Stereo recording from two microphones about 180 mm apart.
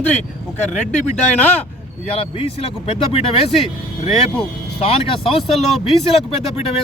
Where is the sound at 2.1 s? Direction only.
30° left (ahead or behind).